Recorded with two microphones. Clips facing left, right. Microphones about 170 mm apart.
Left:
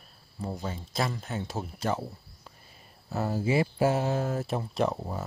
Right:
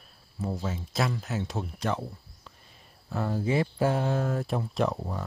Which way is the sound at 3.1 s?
5° left (ahead or behind).